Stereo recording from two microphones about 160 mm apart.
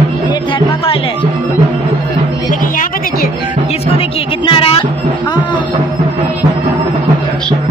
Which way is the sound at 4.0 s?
35° left (ahead or behind).